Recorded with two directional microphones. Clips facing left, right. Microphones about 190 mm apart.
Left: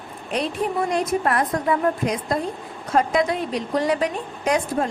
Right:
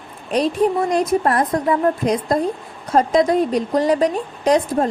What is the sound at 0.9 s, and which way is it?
A woman's voice, 35° right (ahead or behind).